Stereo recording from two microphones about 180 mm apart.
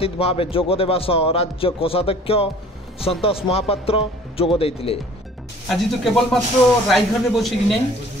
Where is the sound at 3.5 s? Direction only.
30° left (ahead or behind).